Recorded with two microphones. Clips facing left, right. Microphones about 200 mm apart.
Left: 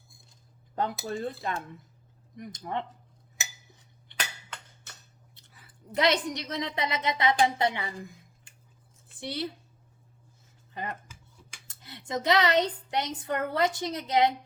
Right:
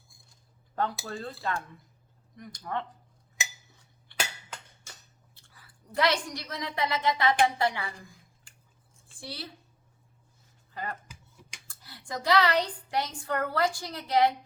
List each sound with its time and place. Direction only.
0.8 s speech: 20° left (ahead or behind)
4.1 s glass: 20° left (ahead or behind)
5.3 s a woman's voice: 20° left (ahead or behind)
9.2 s speech: 20° left (ahead or behind)
10.8 s speech: 20° left (ahead or behind)